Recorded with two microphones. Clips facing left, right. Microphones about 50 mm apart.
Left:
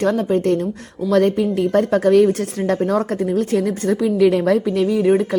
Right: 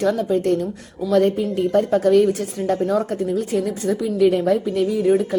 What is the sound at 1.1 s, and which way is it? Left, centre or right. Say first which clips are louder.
A woman's voice: left 2 dB; left.